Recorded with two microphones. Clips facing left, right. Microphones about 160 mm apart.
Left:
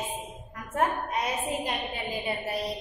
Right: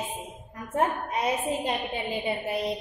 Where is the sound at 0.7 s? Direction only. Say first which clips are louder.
Right 1 dB; 30° right (ahead or behind).